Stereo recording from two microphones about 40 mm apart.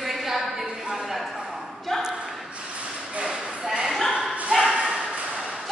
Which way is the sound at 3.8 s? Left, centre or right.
Centre.